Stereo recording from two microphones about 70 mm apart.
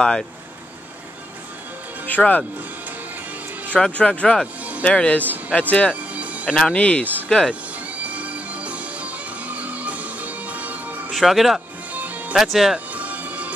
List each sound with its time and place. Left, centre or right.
2.0 s speech: left
3.7 s speech: centre
6.1 s music: right
6.5 s speech: centre
7.2 s speech: centre
8.0 s music: right
11.1 s speech: centre
11.9 s music: right